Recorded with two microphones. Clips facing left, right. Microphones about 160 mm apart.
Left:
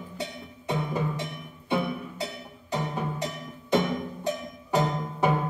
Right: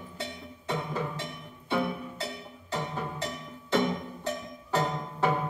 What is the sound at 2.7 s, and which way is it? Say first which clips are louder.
Music: left 3 dB; 15° left (ahead or behind).